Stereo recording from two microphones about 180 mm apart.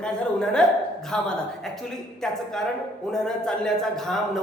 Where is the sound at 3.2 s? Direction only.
5° left (ahead or behind).